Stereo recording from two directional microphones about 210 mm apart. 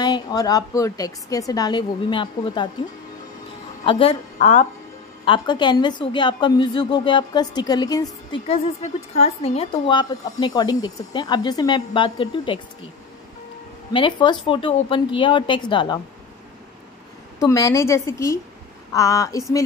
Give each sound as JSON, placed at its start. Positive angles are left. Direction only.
{"t": 0.0, "sound": "a woman's voice", "side_deg": 20}
{"t": 3.8, "sound": "a woman's voice", "side_deg": 25}
{"t": 8.5, "sound": "a woman's voice", "side_deg": 30}
{"t": 13.9, "sound": "a woman's voice", "side_deg": 20}
{"t": 17.4, "sound": "a woman's voice", "side_deg": 15}